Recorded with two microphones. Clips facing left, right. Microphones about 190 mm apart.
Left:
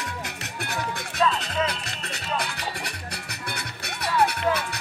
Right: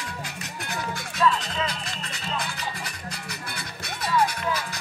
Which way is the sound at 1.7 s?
65° left (ahead or behind).